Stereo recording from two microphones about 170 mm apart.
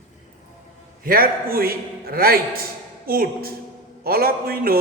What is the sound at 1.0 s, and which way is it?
A man's voice, 60° right (ahead or behind).